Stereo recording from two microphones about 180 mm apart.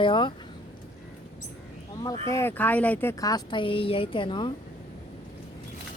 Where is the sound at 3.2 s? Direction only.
20° left (ahead or behind).